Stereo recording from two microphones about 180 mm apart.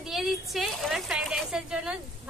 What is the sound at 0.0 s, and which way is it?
A woman's voice, centre (ahead or behind).